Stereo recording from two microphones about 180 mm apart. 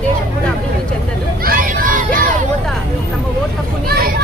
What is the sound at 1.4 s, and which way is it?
Crowd, 50° right (ahead or behind).